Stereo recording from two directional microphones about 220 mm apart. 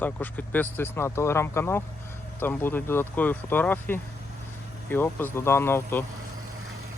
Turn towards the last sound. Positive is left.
turn(degrees=10)  # may be behind; listen again after turning